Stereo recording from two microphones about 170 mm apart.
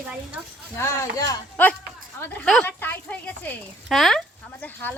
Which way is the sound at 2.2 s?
10° left (ahead or behind).